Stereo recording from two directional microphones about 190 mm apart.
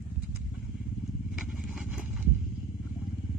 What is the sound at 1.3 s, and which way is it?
Vehicle, 5° right (ahead or behind).